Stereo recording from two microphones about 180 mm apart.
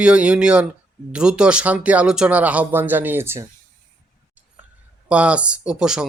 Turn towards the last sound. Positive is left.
turn(degrees=-5)  # may be behind; listen again after turning